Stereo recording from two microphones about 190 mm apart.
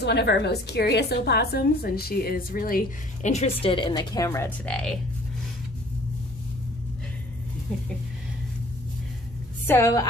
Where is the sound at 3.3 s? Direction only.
30° left (ahead or behind); by 5.0 s 5° left (ahead or behind).